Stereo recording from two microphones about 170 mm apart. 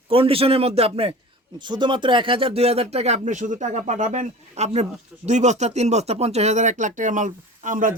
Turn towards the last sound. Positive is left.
turn(degrees=-50)  # may be behind; listen again after turning